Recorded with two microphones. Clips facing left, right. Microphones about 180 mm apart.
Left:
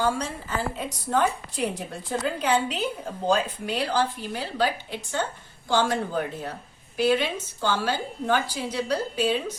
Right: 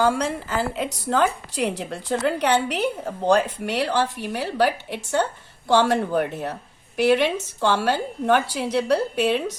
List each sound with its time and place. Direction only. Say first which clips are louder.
0.2 s a woman's voice: right 5 dB; 85° right; by 9.4 s 70° right (ahead or behind)